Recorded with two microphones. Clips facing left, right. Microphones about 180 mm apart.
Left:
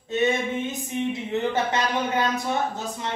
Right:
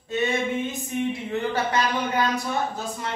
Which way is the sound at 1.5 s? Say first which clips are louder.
Even; 20° left (ahead or behind).